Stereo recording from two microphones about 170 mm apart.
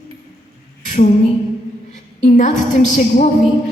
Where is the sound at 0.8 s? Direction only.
45° left (ahead or behind).